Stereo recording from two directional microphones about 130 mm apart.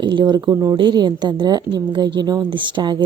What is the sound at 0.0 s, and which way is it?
A woman's voice, 40° right (ahead or behind).